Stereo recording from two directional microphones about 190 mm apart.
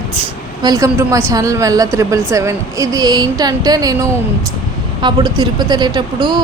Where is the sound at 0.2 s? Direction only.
20° right (ahead or behind).